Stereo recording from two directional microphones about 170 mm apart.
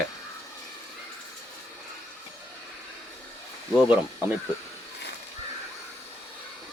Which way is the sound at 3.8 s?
10° right (ahead or behind).